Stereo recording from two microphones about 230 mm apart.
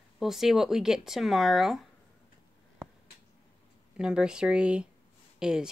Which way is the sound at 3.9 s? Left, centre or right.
Centre.